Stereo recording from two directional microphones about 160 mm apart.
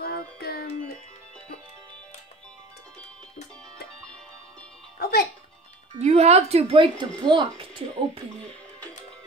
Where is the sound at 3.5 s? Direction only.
5° left (ahead or behind).